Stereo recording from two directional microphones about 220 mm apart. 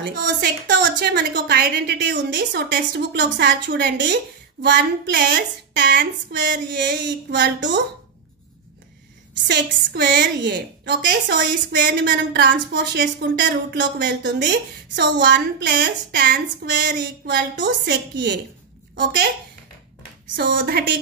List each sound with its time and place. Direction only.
0.0 s a woman's voice: 50° right (ahead or behind)
9.5 s a woman's voice: 50° right (ahead or behind)
20.3 s a woman's voice: 45° right (ahead or behind)